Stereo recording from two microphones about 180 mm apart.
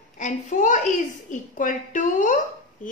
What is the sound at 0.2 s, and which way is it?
A child's voice, 45° left (ahead or behind).